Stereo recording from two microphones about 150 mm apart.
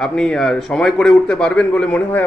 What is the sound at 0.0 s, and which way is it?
A man's voice, 5° left (ahead or behind).